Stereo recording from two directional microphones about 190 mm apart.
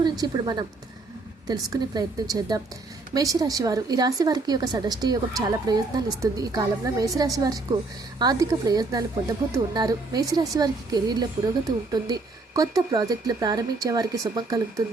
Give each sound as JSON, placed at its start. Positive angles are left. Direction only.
{"t": 0.0, "sound": "a woman's voice", "side_deg": -20}